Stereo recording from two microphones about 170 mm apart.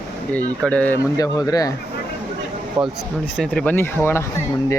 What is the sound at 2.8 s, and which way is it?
Speech, 30° right (ahead or behind).